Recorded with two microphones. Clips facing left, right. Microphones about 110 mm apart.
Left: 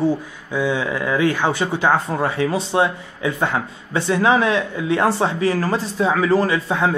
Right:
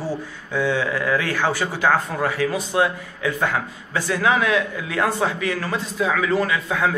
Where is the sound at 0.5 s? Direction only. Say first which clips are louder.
Left 1 dB; 15° left (ahead or behind).